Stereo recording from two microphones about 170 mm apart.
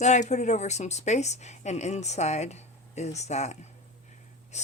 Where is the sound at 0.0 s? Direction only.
45° left (ahead or behind).